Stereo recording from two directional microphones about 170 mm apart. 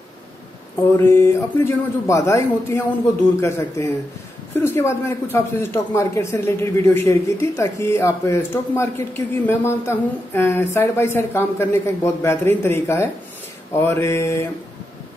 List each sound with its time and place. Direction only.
0.9 s a man's voice: 15° left (ahead or behind)